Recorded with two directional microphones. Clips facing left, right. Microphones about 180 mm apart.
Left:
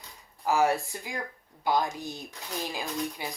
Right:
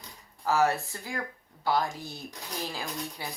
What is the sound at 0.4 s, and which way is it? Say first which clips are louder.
Speech: left 1 dB; 15° left (ahead or behind).